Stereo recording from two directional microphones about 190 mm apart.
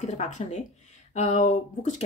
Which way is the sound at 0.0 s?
40° left (ahead or behind).